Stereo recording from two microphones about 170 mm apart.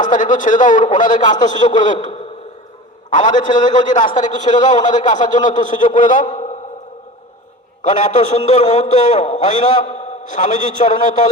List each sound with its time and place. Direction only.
0.0 s a man's voice: 50° left (ahead or behind)
6.3 s a sound: 40° left (ahead or behind)
7.8 s a man's voice: 45° left (ahead or behind)